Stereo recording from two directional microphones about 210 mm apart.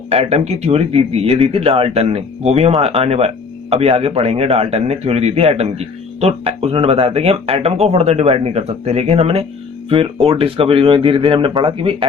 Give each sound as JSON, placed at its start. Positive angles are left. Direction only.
{"t": 0.1, "sound": "speech", "side_deg": -30}